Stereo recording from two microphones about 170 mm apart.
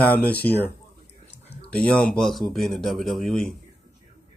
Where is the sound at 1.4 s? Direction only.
35° left (ahead or behind).